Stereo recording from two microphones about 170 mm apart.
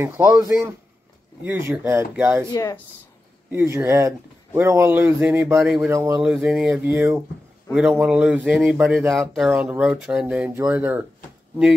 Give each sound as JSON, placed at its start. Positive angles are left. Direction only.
{"t": 0.0, "sound": "speech", "side_deg": -10}
{"t": 1.4, "sound": "speech", "side_deg": -15}
{"t": 2.5, "sound": "speech", "side_deg": 20}
{"t": 3.4, "sound": "speech", "side_deg": -15}
{"t": 5.9, "sound": "speech", "side_deg": -15}
{"t": 6.2, "sound": "speech", "side_deg": -5}